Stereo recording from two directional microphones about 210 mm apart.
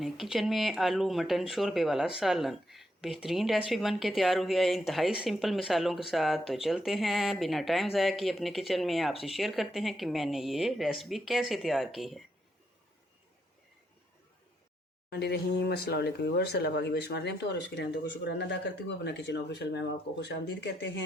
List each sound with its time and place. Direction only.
0.0 s a woman's voice: centre (ahead or behind)
15.1 s speech: 55° left (ahead or behind)